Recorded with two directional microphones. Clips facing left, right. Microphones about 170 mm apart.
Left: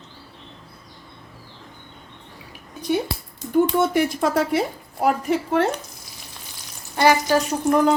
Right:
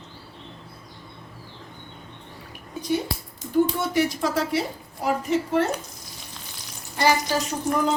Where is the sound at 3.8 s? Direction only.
55° left (ahead or behind).